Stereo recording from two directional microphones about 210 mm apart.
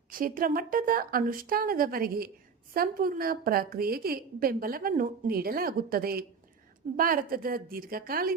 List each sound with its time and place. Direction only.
0.1 s a woman's voice: 40° right (ahead or behind)